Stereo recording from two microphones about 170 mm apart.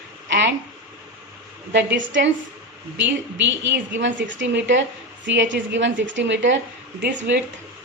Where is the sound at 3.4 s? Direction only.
90° right.